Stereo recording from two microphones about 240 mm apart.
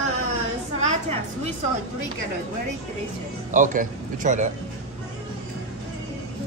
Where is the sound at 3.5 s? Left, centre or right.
Right.